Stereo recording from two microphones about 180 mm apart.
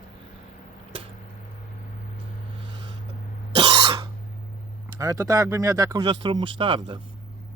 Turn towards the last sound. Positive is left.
turn(degrees=-25)  # may be behind; listen again after turning